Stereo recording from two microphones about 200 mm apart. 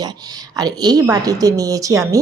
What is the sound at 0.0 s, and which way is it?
A woman's voice, 20° right (ahead or behind).